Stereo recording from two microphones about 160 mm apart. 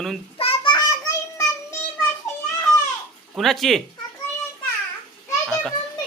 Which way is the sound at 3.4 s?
Centre (ahead or behind).